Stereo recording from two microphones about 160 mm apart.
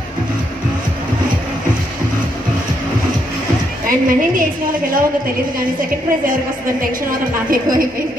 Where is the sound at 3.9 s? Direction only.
60° right (ahead or behind).